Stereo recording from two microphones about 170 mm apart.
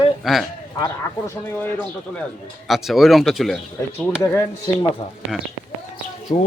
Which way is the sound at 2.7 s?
Centre (ahead or behind).